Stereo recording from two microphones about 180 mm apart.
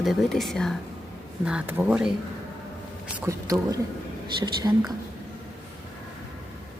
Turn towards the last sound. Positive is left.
turn(degrees=-20)  # may be behind; listen again after turning